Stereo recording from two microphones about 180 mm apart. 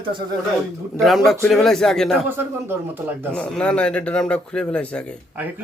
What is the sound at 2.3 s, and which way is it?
Speech, 10° right (ahead or behind).